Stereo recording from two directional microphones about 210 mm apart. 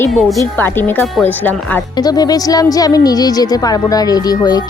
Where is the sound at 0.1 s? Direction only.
Centre (ahead or behind).